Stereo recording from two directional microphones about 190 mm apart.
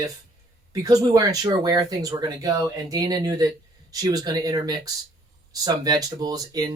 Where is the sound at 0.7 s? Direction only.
20° right (ahead or behind).